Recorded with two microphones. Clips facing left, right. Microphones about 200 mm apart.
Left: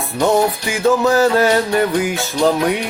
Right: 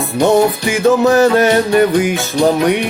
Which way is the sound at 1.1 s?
20° right (ahead or behind).